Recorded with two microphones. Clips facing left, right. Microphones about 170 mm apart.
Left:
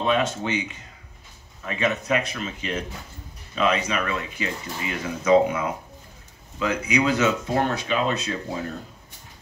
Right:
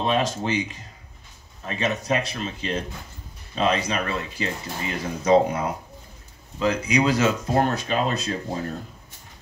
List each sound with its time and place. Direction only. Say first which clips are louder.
0.0 s speech: even; 35° right (ahead or behind)